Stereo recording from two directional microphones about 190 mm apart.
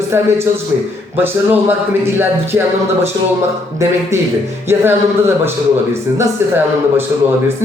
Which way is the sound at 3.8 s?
15° right (ahead or behind).